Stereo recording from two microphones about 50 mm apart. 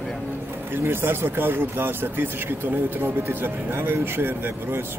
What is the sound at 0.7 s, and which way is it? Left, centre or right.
Speech, right.